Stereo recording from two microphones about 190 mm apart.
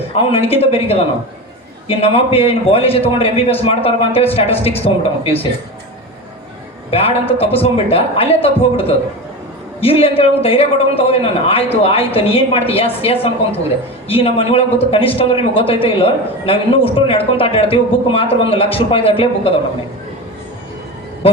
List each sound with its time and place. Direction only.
0.1 s a man's voice: 30° left (ahead or behind)
6.9 s a man's voice: 30° left (ahead or behind)